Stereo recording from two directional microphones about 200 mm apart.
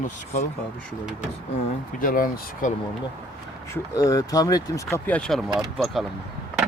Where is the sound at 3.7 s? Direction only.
15° left (ahead or behind); by 6.1 s centre (ahead or behind).